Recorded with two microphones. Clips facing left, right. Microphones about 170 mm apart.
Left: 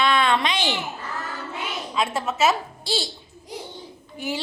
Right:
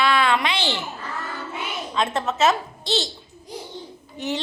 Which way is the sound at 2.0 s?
5° left (ahead or behind).